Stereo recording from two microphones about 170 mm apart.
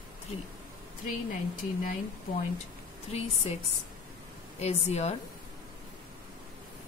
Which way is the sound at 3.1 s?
40° left (ahead or behind).